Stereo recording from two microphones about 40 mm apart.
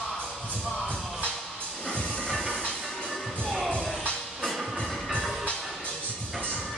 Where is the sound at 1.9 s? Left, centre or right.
Left.